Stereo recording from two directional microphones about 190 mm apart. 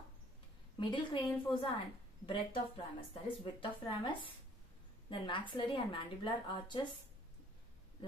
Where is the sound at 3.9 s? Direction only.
25° left (ahead or behind).